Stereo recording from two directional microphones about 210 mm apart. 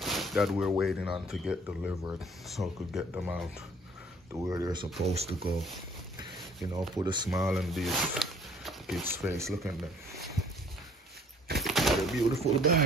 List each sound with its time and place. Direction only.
0.0 s speech: centre (ahead or behind); by 4.8 s 15° right (ahead or behind)
5.0 s speech: 30° right (ahead or behind)
5.5 s speech: centre (ahead or behind)
6.1 s a sound: 20° right (ahead or behind)
7.0 s speech: 20° right (ahead or behind)
7.5 s speech: centre (ahead or behind)
9.0 s speech: 10° right (ahead or behind)
9.4 s speech: centre (ahead or behind)
11.6 s a sound: centre (ahead or behind)